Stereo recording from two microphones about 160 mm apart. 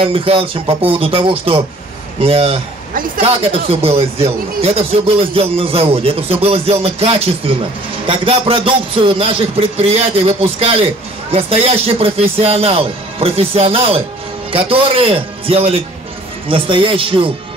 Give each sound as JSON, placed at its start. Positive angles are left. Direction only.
{"t": 0.1, "sound": "speech", "side_deg": -35}
{"t": 3.8, "sound": "speech", "side_deg": -40}